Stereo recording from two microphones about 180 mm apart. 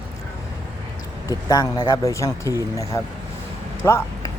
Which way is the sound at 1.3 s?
20° left (ahead or behind).